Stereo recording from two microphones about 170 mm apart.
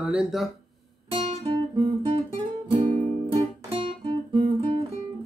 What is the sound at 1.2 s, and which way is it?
Guitar, 35° right (ahead or behind).